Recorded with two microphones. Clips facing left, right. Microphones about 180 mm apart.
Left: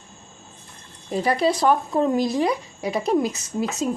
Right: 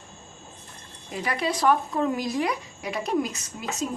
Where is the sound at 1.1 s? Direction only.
30° left (ahead or behind).